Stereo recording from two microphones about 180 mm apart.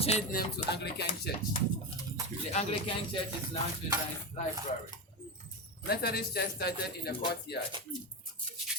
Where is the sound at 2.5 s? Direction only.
35° left (ahead or behind).